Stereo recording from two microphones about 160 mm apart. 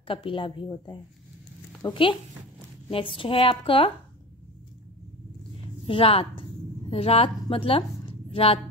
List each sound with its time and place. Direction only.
0.0 s a woman's voice: 35° left (ahead or behind)
5.9 s a woman's voice: 35° left (ahead or behind)